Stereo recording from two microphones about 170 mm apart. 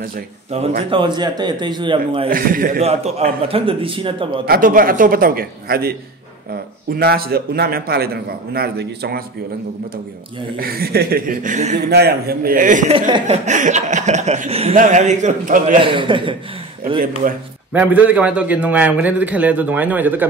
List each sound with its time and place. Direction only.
0.8 s a man's voice: 30° right (ahead or behind)
2.2 s a man's voice: 55° right (ahead or behind)
2.8 s speech: 35° right (ahead or behind)
4.5 s a man's voice: 55° right (ahead or behind); by 9.2 s 70° right (ahead or behind)
10.6 s a man's voice: 60° right (ahead or behind); by 11.8 s 45° right (ahead or behind)
11.9 s a man's voice: 70° right (ahead or behind); by 12.9 s 50° right (ahead or behind)
12.9 s speech: 30° right (ahead or behind)
13.5 s speech: 45° right (ahead or behind)
15.7 s a man's voice: 30° right (ahead or behind)
17.7 s a man's voice: 10° right (ahead or behind)